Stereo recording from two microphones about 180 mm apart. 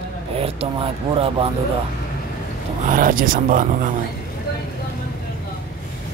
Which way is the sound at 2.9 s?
50° right (ahead or behind).